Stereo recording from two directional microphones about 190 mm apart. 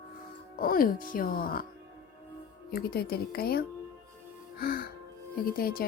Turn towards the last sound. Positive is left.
turn(degrees=50)  # may be behind; listen again after turning